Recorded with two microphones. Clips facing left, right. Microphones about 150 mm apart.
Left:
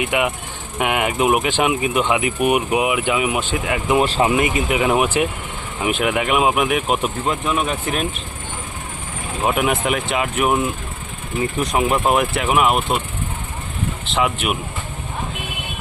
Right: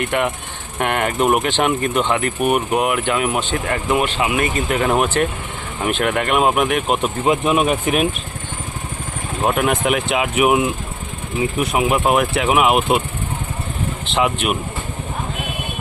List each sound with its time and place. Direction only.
0.0 s speech: 5° left (ahead or behind)
3.9 s speech: 35° left (ahead or behind)
4.4 s speech: 15° left (ahead or behind)
7.3 s speech: 20° right (ahead or behind)
9.4 s speech: centre (ahead or behind)
14.0 s speech: centre (ahead or behind)